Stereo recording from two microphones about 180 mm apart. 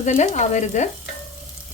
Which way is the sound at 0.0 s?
40° left (ahead or behind).